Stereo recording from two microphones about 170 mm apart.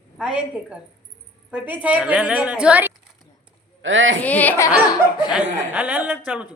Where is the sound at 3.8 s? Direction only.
90° right.